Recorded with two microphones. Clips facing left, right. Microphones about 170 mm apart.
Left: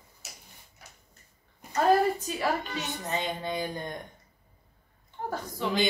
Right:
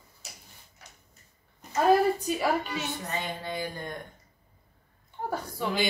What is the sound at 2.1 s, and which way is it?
Speech, 10° right (ahead or behind).